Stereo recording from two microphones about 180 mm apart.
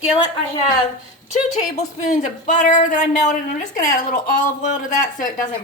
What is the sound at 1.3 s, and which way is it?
Speech, 45° left (ahead or behind).